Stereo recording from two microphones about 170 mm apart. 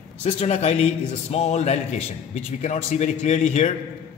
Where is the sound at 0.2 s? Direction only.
40° left (ahead or behind).